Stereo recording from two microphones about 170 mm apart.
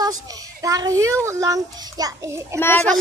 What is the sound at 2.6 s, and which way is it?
Speech, 10° left (ahead or behind).